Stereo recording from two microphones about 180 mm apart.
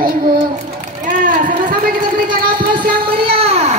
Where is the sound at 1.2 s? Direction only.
50° right (ahead or behind).